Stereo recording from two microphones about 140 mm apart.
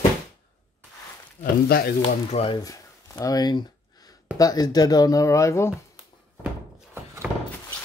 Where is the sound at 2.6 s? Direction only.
25° left (ahead or behind).